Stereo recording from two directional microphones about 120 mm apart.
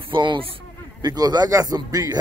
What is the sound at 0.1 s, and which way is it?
A man's voice, 40° right (ahead or behind).